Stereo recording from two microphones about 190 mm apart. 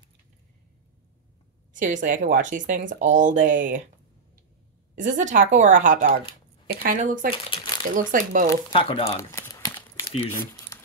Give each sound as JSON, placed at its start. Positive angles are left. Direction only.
{"t": 1.7, "sound": "speech", "side_deg": -40}
{"t": 4.9, "sound": "speech", "side_deg": -40}
{"t": 7.4, "sound": "shuffling cards", "side_deg": 25}
{"t": 7.9, "sound": "speech", "side_deg": -45}
{"t": 8.7, "sound": "speech", "side_deg": 30}
{"t": 9.3, "sound": "crumpling", "side_deg": 20}
{"t": 10.7, "sound": "a sound", "side_deg": 15}